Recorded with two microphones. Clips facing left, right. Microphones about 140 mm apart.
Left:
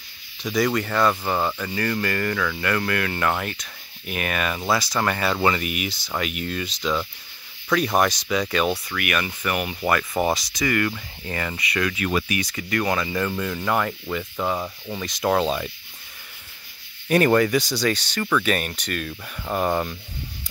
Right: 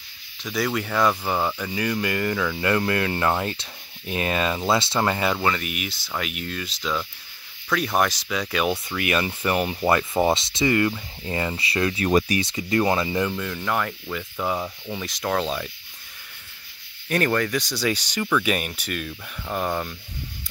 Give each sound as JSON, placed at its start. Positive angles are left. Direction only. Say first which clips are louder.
{"t": 0.4, "sound": "speech", "louder": "left 3 dB", "side_deg": 0}
{"t": 5.4, "sound": "speech", "louder": "left 3 dB", "side_deg": 5}
{"t": 8.6, "sound": "speech", "louder": "right 1 dB", "side_deg": -25}
{"t": 13.4, "sound": "speech", "louder": "left 2 dB", "side_deg": 5}
{"t": 17.1, "sound": "speech", "louder": "left 5 dB", "side_deg": 10}
{"t": 17.8, "sound": "speech", "louder": "left 1 dB", "side_deg": -15}
{"t": 19.4, "sound": "speech", "louder": "left 3 dB", "side_deg": 10}